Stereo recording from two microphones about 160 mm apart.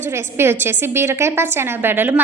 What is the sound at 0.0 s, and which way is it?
A woman's voice, 15° right (ahead or behind).